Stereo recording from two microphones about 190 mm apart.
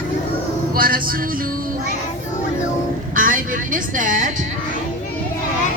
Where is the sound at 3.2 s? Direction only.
45° right (ahead or behind).